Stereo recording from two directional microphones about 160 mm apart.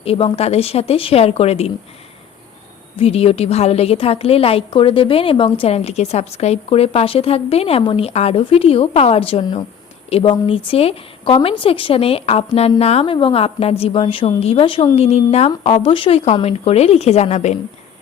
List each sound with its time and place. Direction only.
0.0 s a woman's voice: 35° left (ahead or behind)
3.0 s a woman's voice: 40° left (ahead or behind)